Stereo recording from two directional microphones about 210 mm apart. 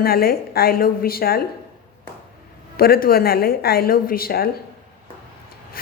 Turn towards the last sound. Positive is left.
turn(degrees=45)  # may be behind; listen again after turning